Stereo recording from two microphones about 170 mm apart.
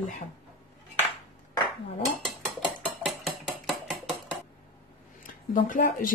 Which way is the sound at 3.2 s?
Centre (ahead or behind).